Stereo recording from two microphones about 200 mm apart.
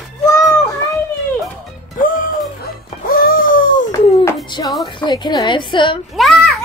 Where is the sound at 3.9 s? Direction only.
20° left (ahead or behind).